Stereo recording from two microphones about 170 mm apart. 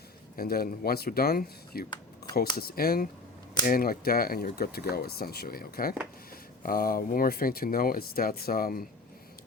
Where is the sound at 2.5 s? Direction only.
60° left (ahead or behind).